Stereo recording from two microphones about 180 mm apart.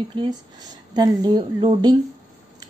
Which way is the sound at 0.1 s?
25° right (ahead or behind).